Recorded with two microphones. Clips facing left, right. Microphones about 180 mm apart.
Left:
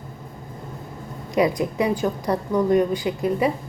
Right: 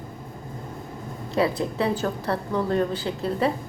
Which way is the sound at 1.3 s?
15° left (ahead or behind).